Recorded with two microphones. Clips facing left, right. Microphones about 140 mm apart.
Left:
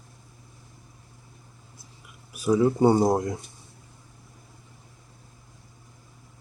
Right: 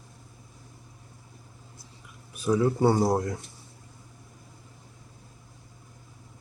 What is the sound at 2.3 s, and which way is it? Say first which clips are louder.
Speech: left 3 dB; 15° left (ahead or behind).